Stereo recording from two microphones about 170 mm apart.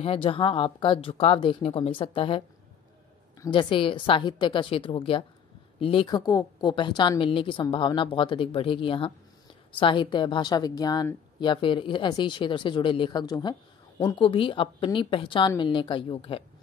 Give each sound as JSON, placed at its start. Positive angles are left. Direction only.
{"t": 0.0, "sound": "speech", "side_deg": 30}